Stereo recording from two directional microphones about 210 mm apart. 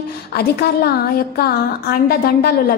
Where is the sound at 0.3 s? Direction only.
50° left (ahead or behind).